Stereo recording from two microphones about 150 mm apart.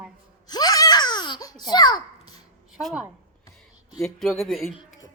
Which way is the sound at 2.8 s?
Centre (ahead or behind).